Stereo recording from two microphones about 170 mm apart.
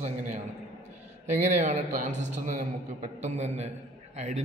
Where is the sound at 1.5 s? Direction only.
45° right (ahead or behind).